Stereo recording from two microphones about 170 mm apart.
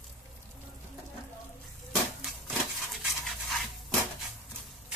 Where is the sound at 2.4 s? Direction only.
Centre (ahead or behind).